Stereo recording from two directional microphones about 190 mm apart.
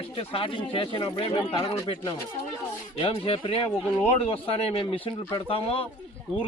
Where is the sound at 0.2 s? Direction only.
30° left (ahead or behind).